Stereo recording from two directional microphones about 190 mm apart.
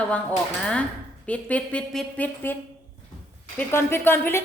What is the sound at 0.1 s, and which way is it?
A woman's voice, 5° left (ahead or behind).